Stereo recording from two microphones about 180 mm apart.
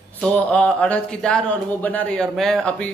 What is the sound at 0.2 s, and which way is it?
Speech, 5° left (ahead or behind).